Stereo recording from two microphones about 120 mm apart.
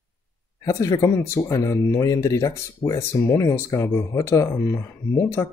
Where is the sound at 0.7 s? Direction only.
25° left (ahead or behind).